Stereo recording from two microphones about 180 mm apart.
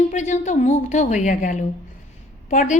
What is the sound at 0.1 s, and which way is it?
A woman's voice, 40° left (ahead or behind).